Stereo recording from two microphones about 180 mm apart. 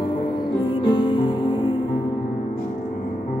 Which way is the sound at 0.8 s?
25° left (ahead or behind).